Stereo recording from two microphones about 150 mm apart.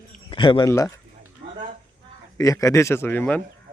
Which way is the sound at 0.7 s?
20° left (ahead or behind).